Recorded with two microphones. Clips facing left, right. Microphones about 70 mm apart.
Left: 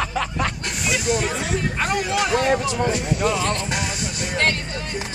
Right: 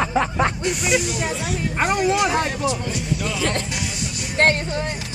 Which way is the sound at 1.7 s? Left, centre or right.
Right.